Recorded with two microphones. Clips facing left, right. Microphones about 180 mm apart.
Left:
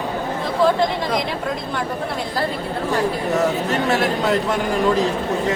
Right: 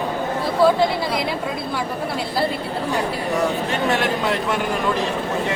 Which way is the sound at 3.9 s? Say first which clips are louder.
Left 2 dB; 40° left (ahead or behind).